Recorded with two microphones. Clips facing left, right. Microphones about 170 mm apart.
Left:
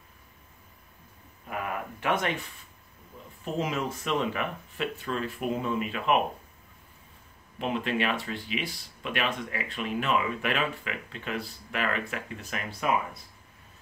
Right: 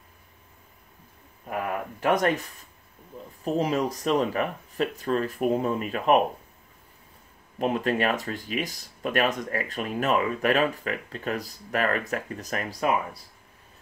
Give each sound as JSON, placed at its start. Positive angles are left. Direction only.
{"t": 2.0, "sound": "speech", "side_deg": -40}
{"t": 7.5, "sound": "speech", "side_deg": -45}